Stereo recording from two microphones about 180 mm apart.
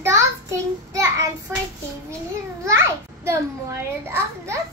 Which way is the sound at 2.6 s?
15° right (ahead or behind).